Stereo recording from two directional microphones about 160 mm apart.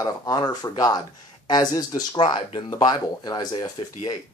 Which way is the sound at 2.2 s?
35° left (ahead or behind).